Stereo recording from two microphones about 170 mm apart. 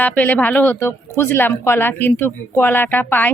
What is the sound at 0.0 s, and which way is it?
A woman's voice, 10° left (ahead or behind).